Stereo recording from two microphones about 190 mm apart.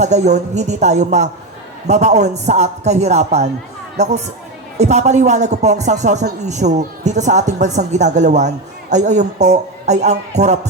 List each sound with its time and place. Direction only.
0.0 s a woman's voice: 40° right (ahead or behind)